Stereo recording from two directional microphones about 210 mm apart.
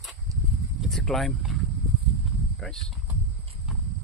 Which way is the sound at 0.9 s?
Centre (ahead or behind).